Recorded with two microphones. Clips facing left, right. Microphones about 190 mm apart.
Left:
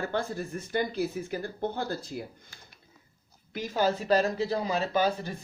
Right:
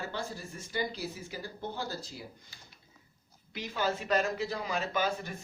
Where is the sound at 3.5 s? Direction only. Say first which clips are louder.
Left 6 dB; 45° left (ahead or behind).